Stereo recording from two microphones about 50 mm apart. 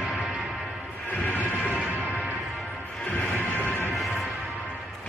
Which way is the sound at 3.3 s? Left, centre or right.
Left.